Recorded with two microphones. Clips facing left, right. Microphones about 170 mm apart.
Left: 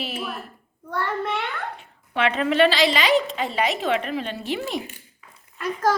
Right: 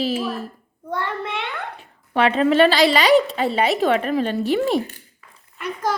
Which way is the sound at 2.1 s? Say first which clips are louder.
Right 5 dB; 35° right (ahead or behind).